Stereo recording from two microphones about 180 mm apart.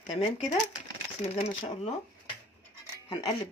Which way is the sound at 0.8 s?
30° left (ahead or behind).